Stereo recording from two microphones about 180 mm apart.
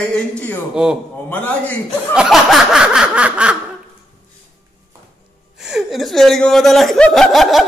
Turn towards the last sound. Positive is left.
turn(degrees=0)  # may be behind; listen again after turning